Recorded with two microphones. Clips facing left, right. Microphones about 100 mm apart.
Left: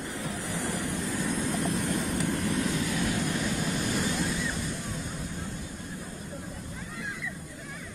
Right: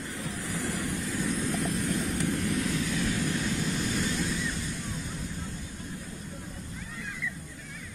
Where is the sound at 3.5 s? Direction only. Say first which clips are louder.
Left 1 dB; 55° left (ahead or behind).